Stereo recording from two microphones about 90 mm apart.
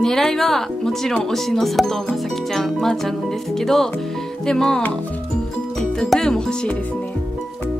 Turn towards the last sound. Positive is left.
turn(degrees=10)  # may be behind; listen again after turning